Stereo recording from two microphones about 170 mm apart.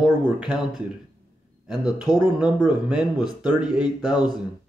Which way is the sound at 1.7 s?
20° left (ahead or behind).